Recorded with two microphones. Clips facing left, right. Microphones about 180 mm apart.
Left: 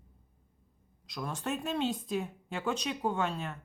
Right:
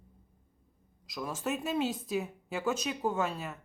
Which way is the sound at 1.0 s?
5° right (ahead or behind).